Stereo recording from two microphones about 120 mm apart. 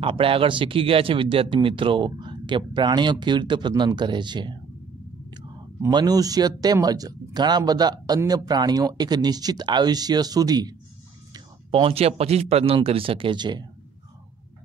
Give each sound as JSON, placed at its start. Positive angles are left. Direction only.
{"t": 0.0, "sound": "speech", "side_deg": -50}
{"t": 5.9, "sound": "speech", "side_deg": -35}
{"t": 11.7, "sound": "speech", "side_deg": -50}